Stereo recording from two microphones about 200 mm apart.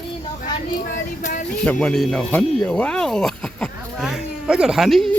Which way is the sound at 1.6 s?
5° left (ahead or behind).